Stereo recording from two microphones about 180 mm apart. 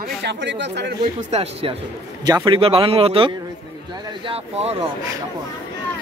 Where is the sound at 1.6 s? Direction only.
30° right (ahead or behind).